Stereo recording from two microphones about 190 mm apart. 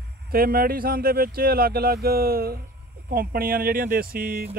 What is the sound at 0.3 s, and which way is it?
Speech, 50° right (ahead or behind).